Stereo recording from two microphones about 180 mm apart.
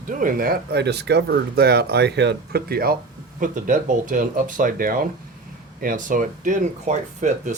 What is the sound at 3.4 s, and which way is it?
Speech, 45° right (ahead or behind).